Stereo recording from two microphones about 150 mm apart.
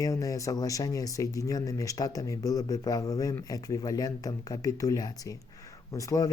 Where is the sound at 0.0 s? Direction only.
20° left (ahead or behind).